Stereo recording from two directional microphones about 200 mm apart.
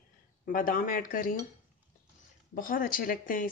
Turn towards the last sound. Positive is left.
turn(degrees=45)  # may be behind; listen again after turning